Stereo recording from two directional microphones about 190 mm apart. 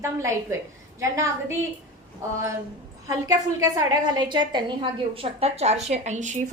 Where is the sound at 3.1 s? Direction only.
15° right (ahead or behind).